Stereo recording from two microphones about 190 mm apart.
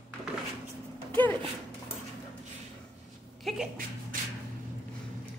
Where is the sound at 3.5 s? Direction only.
Centre (ahead or behind).